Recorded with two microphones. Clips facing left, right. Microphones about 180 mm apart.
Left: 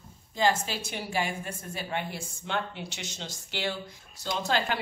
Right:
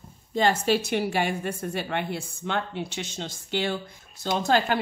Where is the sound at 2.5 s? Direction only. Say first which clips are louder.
Right 4 dB; 55° right (ahead or behind).